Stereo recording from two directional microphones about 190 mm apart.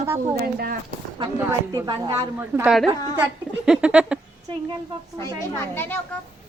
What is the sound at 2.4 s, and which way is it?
Speech, 10° right (ahead or behind).